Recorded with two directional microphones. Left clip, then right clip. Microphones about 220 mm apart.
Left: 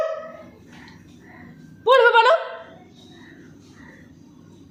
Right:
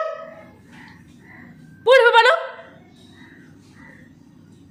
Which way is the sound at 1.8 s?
25° right (ahead or behind).